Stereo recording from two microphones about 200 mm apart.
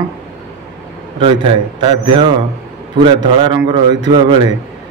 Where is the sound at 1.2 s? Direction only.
30° right (ahead or behind).